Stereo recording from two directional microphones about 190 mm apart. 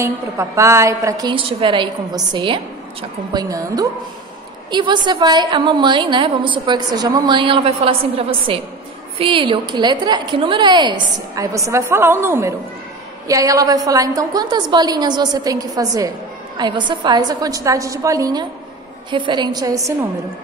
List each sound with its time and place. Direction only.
0.0 s a woman's voice: 15° right (ahead or behind)